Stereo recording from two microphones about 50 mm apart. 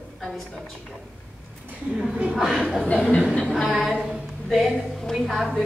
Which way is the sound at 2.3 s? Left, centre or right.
Centre.